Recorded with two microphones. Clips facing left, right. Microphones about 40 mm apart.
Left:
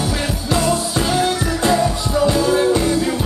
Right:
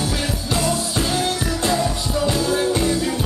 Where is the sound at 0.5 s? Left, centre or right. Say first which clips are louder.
Left 4 dB; centre.